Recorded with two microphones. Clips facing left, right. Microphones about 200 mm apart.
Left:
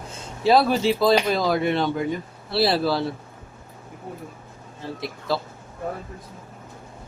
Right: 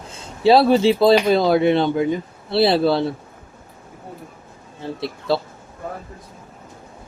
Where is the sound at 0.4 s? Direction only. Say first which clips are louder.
Right 5 dB; 30° right (ahead or behind).